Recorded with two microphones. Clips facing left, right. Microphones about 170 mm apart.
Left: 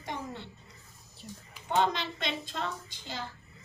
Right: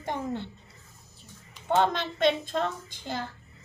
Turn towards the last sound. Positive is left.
turn(degrees=-55)  # may be behind; listen again after turning